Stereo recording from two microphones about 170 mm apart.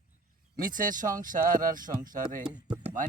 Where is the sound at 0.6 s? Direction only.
55° right (ahead or behind).